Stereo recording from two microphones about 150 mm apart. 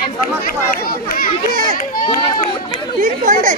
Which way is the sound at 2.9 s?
60° right (ahead or behind).